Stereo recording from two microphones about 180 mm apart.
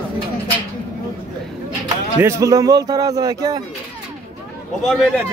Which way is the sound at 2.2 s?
15° right (ahead or behind).